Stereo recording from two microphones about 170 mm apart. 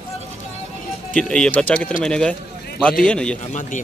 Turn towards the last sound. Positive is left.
turn(degrees=45)  # may be behind; listen again after turning